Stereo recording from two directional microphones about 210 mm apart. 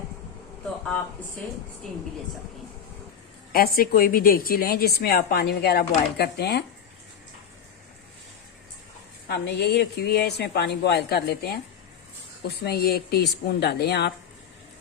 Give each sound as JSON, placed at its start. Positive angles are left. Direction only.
{"t": 3.5, "sound": "a woman's voice", "side_deg": 45}
{"t": 9.3, "sound": "a woman's voice", "side_deg": 50}